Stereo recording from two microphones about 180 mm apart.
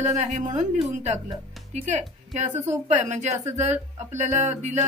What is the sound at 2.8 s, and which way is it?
A woman's voice, 40° right (ahead or behind).